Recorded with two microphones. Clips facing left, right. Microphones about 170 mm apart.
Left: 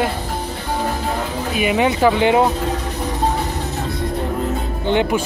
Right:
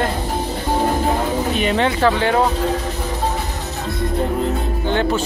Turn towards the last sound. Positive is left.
turn(degrees=15)  # may be behind; listen again after turning